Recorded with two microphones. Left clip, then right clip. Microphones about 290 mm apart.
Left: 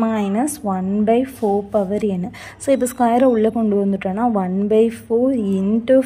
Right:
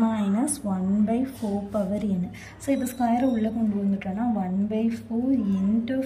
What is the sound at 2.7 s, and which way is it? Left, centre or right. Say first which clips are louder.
A woman's voice: left 9 dB; centre.